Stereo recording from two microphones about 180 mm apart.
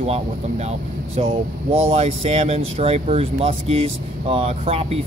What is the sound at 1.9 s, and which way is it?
Speech, 35° right (ahead or behind).